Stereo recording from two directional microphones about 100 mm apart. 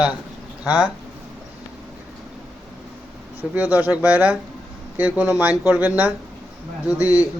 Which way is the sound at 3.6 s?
15° right (ahead or behind).